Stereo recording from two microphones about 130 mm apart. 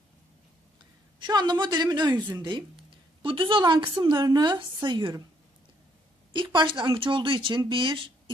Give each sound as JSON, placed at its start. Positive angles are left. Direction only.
{"t": 1.2, "sound": "a woman's voice", "side_deg": -35}
{"t": 6.3, "sound": "speech", "side_deg": -40}